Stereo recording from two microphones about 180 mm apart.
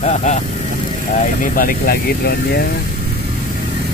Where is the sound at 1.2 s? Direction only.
50° left (ahead or behind).